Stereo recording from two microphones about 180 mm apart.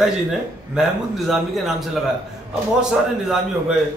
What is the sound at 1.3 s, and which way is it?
A man's voice, centre (ahead or behind).